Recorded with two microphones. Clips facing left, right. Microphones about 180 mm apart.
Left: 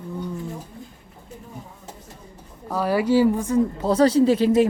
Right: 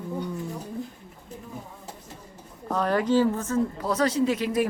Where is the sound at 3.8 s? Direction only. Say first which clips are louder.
Left 9 dB; 30° left (ahead or behind).